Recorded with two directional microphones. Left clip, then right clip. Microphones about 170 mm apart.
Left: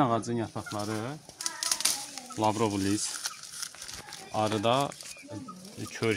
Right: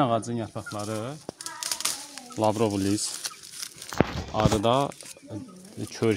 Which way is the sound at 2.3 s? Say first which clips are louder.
Right 3 dB; 70° right (ahead or behind).